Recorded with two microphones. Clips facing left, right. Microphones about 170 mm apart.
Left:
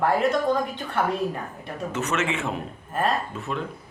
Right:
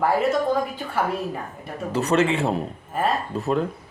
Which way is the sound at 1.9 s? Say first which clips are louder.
Right 7 dB; 35° right (ahead or behind).